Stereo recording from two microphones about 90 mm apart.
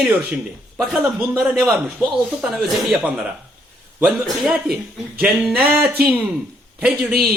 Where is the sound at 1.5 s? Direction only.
5° right (ahead or behind).